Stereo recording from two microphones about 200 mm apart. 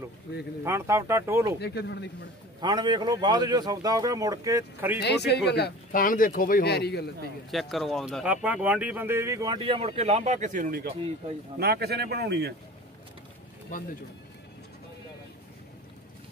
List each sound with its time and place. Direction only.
0.7 s speech: 15° right (ahead or behind)
1.6 s speech: 55° left (ahead or behind)
2.6 s a man's voice: 20° right (ahead or behind)
5.0 s speech: 55° left (ahead or behind)
7.5 s a man's voice: centre (ahead or behind); by 12.5 s 55° right (ahead or behind)
13.7 s speech: 40° left (ahead or behind)